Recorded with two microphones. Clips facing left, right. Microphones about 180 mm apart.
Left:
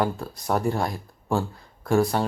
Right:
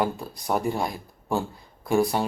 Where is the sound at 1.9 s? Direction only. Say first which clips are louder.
Left 1 dB; 15° right (ahead or behind).